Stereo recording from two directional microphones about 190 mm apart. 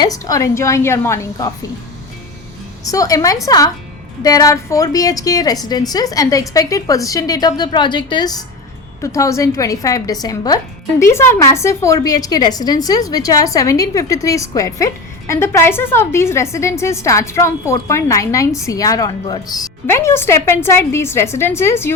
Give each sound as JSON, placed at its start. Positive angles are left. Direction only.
{"t": 0.0, "sound": "a woman's voice", "side_deg": 20}
{"t": 2.8, "sound": "a woman's voice", "side_deg": 15}